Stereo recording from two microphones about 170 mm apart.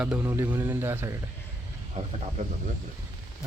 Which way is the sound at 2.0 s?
40° right (ahead or behind).